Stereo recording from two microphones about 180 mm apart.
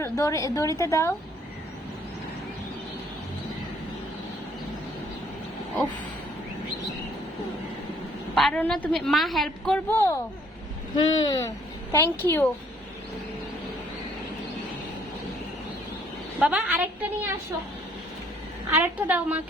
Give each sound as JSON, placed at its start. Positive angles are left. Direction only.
{"t": 0.0, "sound": "a woman's voice", "side_deg": 15}
{"t": 8.4, "sound": "a woman's voice", "side_deg": 5}
{"t": 10.9, "sound": "a woman's voice", "side_deg": 25}
{"t": 16.4, "sound": "a woman's voice", "side_deg": -5}
{"t": 18.7, "sound": "a woman's voice", "side_deg": -10}